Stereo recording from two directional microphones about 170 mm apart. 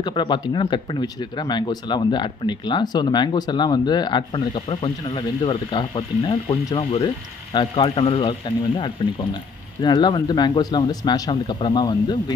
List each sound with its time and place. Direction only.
0.0 s speech: 25° left (ahead or behind)